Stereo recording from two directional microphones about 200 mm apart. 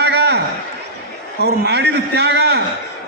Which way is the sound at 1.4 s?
55° right (ahead or behind).